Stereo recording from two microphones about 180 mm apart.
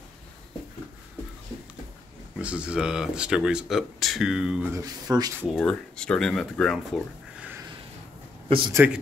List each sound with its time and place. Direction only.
2.3 s speech: 5° right (ahead or behind)
5.6 s speech: 5° left (ahead or behind)
8.5 s speech: 25° right (ahead or behind)